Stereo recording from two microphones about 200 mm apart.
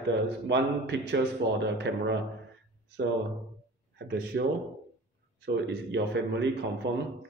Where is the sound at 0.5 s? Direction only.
60° right (ahead or behind).